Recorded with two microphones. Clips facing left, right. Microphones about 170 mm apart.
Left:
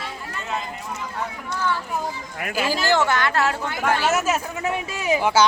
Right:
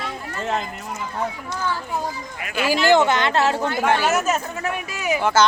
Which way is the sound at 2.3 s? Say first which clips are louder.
Left 3 dB; 55° left (ahead or behind).